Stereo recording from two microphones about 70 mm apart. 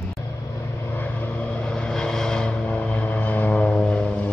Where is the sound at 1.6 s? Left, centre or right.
Centre.